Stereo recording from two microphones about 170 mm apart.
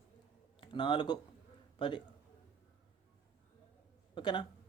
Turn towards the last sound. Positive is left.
turn(degrees=25)  # may be behind; listen again after turning